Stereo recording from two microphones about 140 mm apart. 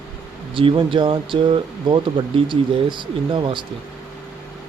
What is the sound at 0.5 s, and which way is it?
Speech, 35° right (ahead or behind).